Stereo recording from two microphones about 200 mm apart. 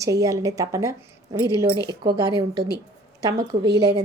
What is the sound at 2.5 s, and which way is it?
Speech, 55° right (ahead or behind).